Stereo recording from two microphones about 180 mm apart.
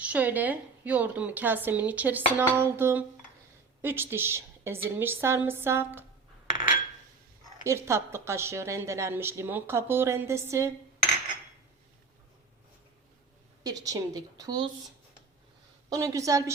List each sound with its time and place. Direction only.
0.0 s a woman's voice: 10° right (ahead or behind)
7.6 s a woman's voice: 15° right (ahead or behind)
13.7 s a woman's voice: 20° right (ahead or behind)
15.9 s a woman's voice: 20° right (ahead or behind)